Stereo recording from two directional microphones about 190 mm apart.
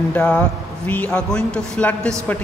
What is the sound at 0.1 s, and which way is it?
A man's voice, 10° left (ahead or behind).